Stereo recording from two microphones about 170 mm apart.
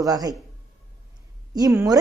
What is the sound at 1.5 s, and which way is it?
Speech, 20° right (ahead or behind).